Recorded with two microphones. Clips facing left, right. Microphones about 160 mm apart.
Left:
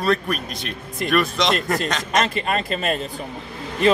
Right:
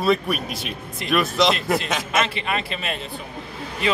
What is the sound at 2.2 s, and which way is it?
Speech, 40° left (ahead or behind).